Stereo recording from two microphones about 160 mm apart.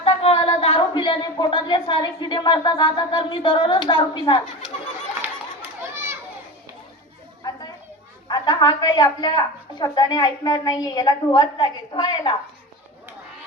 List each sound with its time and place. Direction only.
0.0 s speech: 40° left (ahead or behind)
5.9 s children playing: 15° right (ahead or behind)
7.4 s a sound: 25° left (ahead or behind)
8.3 s a woman's voice: 30° left (ahead or behind)